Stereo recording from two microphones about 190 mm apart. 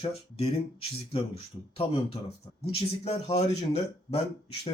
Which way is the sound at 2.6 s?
35° left (ahead or behind).